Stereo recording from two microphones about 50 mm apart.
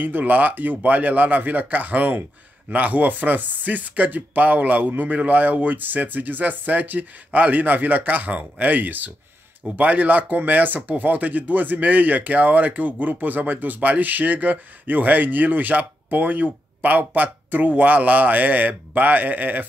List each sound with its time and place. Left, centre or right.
0.0 s speech: right